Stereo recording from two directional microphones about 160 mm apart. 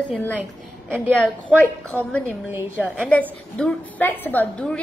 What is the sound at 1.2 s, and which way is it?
A woman's voice, 10° left (ahead or behind).